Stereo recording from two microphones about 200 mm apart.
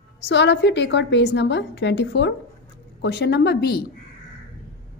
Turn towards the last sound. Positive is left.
turn(degrees=55)  # may be behind; listen again after turning